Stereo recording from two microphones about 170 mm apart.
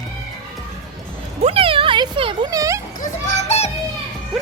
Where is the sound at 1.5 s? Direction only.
35° right (ahead or behind).